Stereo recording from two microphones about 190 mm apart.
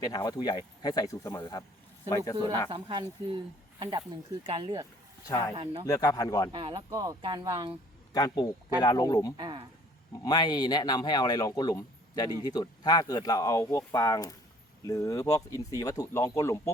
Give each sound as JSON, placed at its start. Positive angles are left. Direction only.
{"t": 0.0, "sound": "speech", "side_deg": 20}
{"t": 2.6, "sound": "speech", "side_deg": -25}
{"t": 5.3, "sound": "speech", "side_deg": 15}
{"t": 6.5, "sound": "speech", "side_deg": -25}
{"t": 8.1, "sound": "speech", "side_deg": 20}
{"t": 9.4, "sound": "speech", "side_deg": -25}
{"t": 10.2, "sound": "speech", "side_deg": 20}